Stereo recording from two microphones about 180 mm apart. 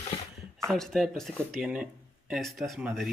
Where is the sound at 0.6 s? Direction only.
Centre (ahead or behind).